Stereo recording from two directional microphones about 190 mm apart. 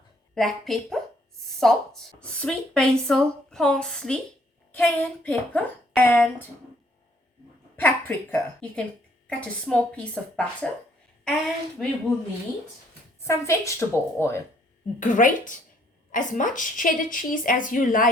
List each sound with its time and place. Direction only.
0.3 s a woman's voice: centre (ahead or behind)
7.8 s a woman's voice: 10° left (ahead or behind)
13.2 s a woman's voice: 15° left (ahead or behind)
14.9 s a woman's voice: 45° left (ahead or behind)